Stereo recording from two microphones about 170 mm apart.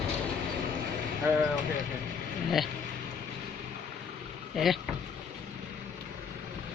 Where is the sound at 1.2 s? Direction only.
15° right (ahead or behind).